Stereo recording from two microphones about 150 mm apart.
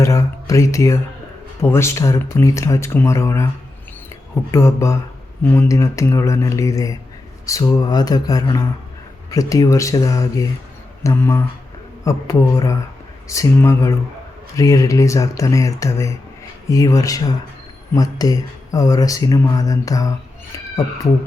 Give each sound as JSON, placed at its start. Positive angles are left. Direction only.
{"t": 0.0, "sound": "speech", "side_deg": 20}
{"t": 4.5, "sound": "speech", "side_deg": 20}